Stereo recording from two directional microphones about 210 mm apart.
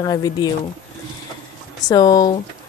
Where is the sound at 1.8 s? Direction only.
20° left (ahead or behind).